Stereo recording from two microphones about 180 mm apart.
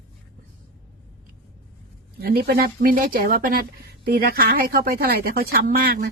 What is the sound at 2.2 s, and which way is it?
Speech, 60° right (ahead or behind).